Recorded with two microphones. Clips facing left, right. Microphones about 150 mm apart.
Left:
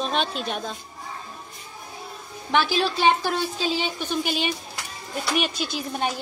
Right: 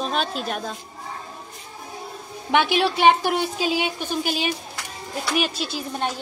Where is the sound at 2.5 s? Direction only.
20° right (ahead or behind).